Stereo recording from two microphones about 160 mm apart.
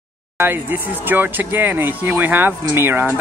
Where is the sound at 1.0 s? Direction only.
10° right (ahead or behind).